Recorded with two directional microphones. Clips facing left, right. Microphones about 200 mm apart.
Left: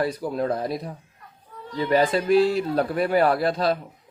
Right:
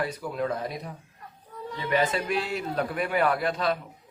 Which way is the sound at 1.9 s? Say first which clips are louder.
Left 7 dB; 35° left (ahead or behind).